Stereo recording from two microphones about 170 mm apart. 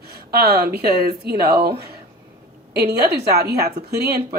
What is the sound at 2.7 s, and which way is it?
A woman's voice, 70° right (ahead or behind).